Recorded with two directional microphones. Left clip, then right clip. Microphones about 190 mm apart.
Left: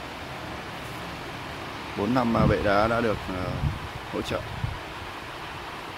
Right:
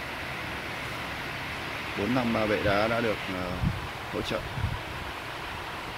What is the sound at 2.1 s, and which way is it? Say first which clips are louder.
Speech: left 4 dB; 15° left (ahead or behind).